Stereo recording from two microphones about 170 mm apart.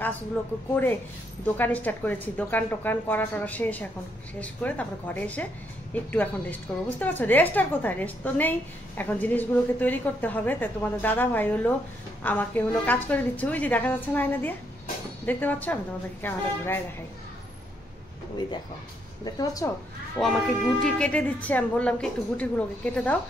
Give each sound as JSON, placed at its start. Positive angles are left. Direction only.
{"t": 1.6, "sound": "a woman's voice", "side_deg": 10}
{"t": 19.2, "sound": "a woman's voice", "side_deg": 20}
{"t": 20.2, "sound": "a woman's voice", "side_deg": 5}